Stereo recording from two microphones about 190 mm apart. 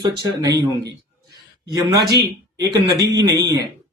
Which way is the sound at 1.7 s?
20° right (ahead or behind).